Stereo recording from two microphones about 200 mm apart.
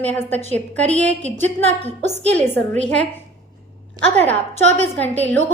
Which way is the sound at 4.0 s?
20° right (ahead or behind).